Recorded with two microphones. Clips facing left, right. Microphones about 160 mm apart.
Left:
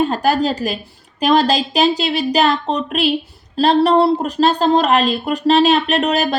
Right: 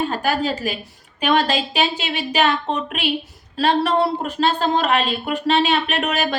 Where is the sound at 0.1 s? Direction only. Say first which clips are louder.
Left 5 dB; 40° left (ahead or behind).